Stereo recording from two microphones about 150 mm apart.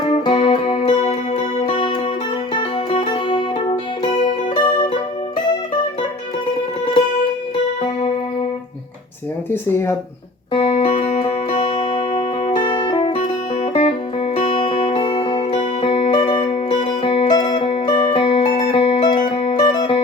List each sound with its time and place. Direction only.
0.1 s music: 30° left (ahead or behind)
0.8 s music: 50° left (ahead or behind)
1.6 s music: 30° left (ahead or behind)
10.5 s music: 40° left (ahead or behind)
13.6 s music: 45° left (ahead or behind)
14.5 s music: 30° left (ahead or behind)
16.4 s music: 45° left (ahead or behind); by 20.0 s 30° left (ahead or behind)